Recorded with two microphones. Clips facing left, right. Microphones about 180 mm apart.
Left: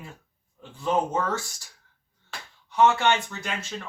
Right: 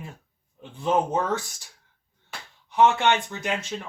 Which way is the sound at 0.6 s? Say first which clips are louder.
Right 2 dB; 20° right (ahead or behind).